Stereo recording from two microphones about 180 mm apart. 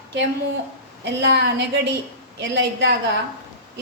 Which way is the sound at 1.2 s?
70° right (ahead or behind).